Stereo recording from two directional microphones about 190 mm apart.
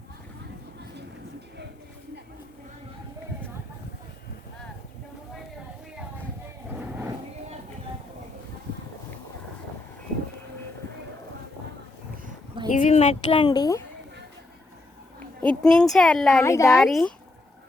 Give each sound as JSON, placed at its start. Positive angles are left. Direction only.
{"t": 12.7, "sound": "speech", "side_deg": 40}
{"t": 15.4, "sound": "speech", "side_deg": 5}
{"t": 16.4, "sound": "speech", "side_deg": 15}
{"t": 16.8, "sound": "speech", "side_deg": 0}